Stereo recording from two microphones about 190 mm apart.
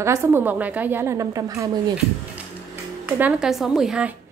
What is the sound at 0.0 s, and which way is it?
A woman's voice, 15° right (ahead or behind).